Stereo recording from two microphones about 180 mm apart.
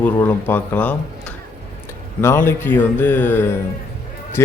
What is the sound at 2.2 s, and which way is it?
Speech, 15° left (ahead or behind).